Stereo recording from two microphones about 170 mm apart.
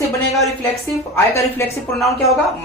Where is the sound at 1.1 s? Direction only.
15° left (ahead or behind).